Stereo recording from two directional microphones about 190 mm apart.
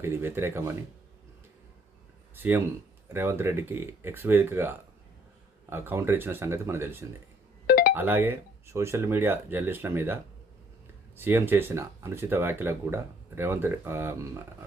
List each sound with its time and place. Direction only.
0.0 s speech: 10° right (ahead or behind)
2.3 s speech: 10° right (ahead or behind)
7.7 s music: 50° left (ahead or behind)
7.9 s speech: 10° right (ahead or behind)
11.2 s speech: 10° right (ahead or behind)